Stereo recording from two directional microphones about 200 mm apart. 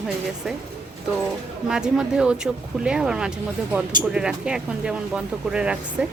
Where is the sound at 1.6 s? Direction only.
5° right (ahead or behind).